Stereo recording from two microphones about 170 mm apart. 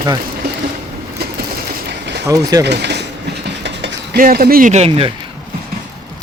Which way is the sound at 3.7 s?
90° right.